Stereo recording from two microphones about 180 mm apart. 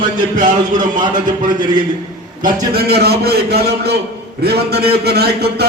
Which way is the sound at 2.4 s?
60° right (ahead or behind).